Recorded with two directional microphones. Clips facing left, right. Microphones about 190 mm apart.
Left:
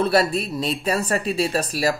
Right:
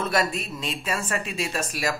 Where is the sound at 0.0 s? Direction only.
35° left (ahead or behind).